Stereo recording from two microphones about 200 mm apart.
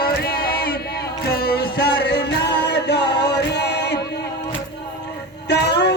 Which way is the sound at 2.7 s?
55° left (ahead or behind).